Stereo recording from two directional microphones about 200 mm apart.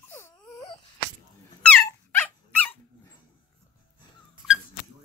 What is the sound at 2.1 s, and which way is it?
Dog, 10° left (ahead or behind).